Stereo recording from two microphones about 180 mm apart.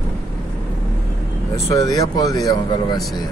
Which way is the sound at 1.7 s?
20° left (ahead or behind).